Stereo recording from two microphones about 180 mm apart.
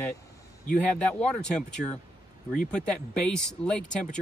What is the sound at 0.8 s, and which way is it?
Speech, 5° left (ahead or behind).